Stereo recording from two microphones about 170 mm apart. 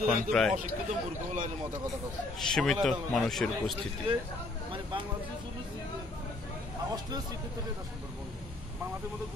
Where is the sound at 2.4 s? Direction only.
Centre (ahead or behind).